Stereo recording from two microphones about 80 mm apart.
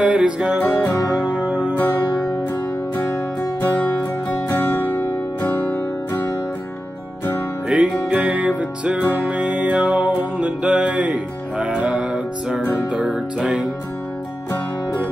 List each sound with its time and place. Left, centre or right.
0.0 s music: centre
0.6 s music: left
1.4 s music: centre
1.8 s music: left
3.6 s music: left
7.6 s music: centre